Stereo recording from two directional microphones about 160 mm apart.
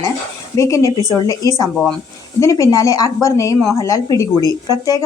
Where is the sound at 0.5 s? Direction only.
20° left (ahead or behind).